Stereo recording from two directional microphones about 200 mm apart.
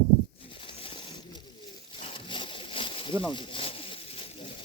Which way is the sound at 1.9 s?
25° left (ahead or behind).